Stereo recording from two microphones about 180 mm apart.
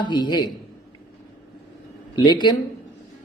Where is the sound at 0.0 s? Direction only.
25° left (ahead or behind).